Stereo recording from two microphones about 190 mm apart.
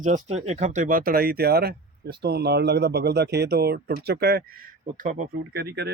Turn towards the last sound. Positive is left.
turn(degrees=-60)  # may be behind; listen again after turning